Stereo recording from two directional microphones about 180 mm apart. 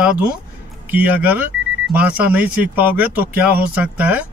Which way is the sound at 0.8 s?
10° right (ahead or behind).